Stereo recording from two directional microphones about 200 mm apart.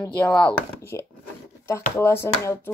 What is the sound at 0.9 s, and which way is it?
Speech, 15° left (ahead or behind).